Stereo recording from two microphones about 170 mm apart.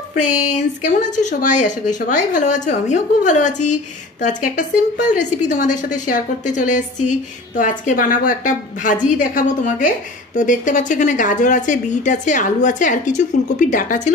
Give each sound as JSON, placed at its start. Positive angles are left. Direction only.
{"t": 0.1, "sound": "a woman's voice", "side_deg": 45}